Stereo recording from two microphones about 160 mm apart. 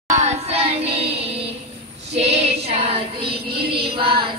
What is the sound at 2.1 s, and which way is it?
Child singing, 40° right (ahead or behind).